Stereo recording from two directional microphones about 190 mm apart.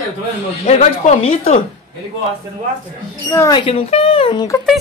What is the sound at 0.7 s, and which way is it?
Speech, 35° left (ahead or behind).